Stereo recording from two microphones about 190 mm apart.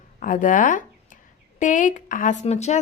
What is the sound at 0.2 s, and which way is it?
Speech, 45° left (ahead or behind).